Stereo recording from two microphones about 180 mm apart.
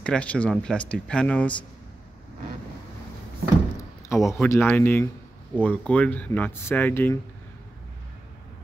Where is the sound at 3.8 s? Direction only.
15° left (ahead or behind).